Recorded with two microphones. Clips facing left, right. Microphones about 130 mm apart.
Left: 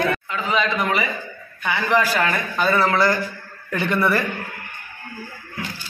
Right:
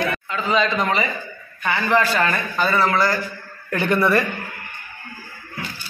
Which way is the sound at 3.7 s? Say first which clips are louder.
Right 2 dB; centre (ahead or behind).